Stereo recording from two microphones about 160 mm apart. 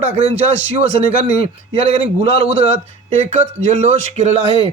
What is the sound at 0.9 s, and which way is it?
A man's voice, 40° right (ahead or behind).